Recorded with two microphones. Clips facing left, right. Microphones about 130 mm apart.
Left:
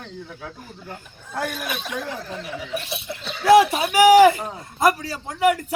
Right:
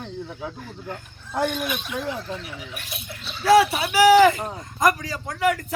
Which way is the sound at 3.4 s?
15° left (ahead or behind).